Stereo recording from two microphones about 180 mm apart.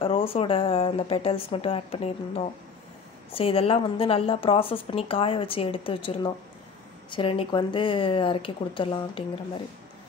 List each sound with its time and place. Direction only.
0.0 s speech: 30° left (ahead or behind)